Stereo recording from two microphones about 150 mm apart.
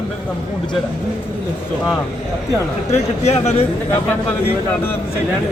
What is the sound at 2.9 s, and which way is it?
Speech, 45° left (ahead or behind).